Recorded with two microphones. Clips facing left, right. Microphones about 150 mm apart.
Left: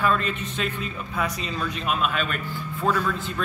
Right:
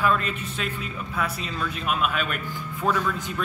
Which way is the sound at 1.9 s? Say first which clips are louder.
Even; 5° right (ahead or behind).